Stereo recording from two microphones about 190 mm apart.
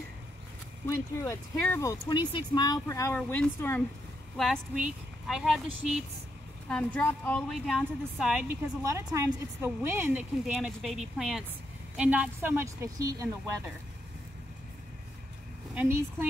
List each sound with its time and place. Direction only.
0.8 s speech: 15° left (ahead or behind)
4.4 s a woman's voice: centre (ahead or behind)
6.7 s a woman's voice: 10° left (ahead or behind)
8.8 s a woman's voice: 15° right (ahead or behind)
10.4 s a woman's voice: centre (ahead or behind)
15.7 s a woman's voice: 10° right (ahead or behind)